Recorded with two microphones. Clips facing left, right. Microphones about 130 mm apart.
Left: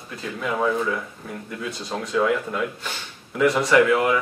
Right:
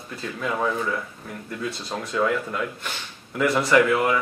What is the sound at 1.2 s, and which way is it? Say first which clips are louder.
Speech: right 1 dB; centre (ahead or behind).